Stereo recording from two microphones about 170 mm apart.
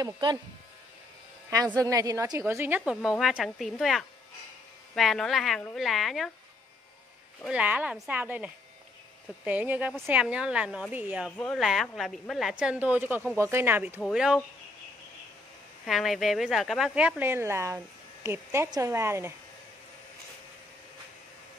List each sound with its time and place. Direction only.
0.0 s speech: 25° right (ahead or behind)
1.8 s a woman's voice: 20° right (ahead or behind); by 6.3 s centre (ahead or behind)
7.4 s speech: 10° right (ahead or behind)
11.3 s a woman's voice: 5° left (ahead or behind)
15.8 s speech: centre (ahead or behind)